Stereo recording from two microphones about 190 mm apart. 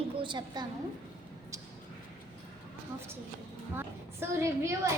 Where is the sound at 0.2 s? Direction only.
25° right (ahead or behind).